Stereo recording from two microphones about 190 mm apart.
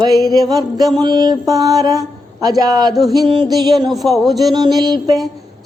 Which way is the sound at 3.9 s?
Centre (ahead or behind).